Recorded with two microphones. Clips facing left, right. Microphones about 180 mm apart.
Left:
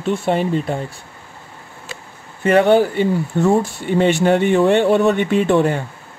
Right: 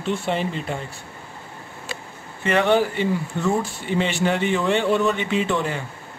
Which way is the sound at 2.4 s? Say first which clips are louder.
Left 6 dB; 45° left (ahead or behind).